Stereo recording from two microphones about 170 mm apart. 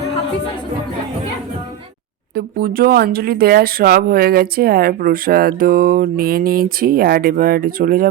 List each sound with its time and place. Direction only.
2.3 s speech: 65° right (ahead or behind)